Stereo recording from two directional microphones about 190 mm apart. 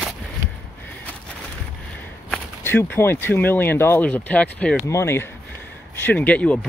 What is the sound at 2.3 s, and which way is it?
Speech, 10° left (ahead or behind).